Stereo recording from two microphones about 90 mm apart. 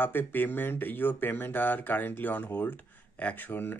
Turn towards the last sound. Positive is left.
turn(degrees=20)  # may be behind; listen again after turning